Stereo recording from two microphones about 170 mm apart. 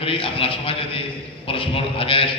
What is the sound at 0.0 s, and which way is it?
A man's voice, 30° left (ahead or behind).